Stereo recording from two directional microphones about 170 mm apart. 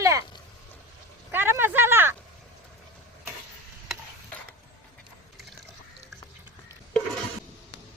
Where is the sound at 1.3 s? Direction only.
15° right (ahead or behind).